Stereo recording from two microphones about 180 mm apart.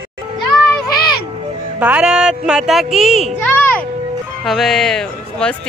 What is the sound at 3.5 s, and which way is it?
Music, 10° left (ahead or behind).